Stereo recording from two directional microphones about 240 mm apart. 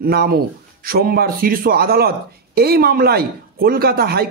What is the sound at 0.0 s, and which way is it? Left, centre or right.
Speech, right.